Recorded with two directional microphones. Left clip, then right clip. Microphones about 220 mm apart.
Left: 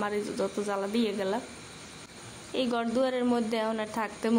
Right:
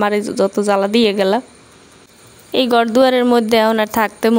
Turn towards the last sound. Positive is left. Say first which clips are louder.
# right 15 dB
turn(degrees=-40)  # may be behind; listen again after turning